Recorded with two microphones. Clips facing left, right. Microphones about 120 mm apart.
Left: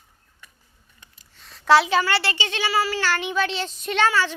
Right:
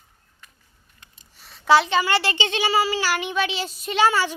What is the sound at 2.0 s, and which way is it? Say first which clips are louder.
Speech: right 2 dB; 15° right (ahead or behind).